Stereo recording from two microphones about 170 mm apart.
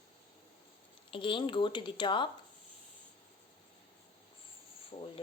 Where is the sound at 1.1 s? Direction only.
30° left (ahead or behind).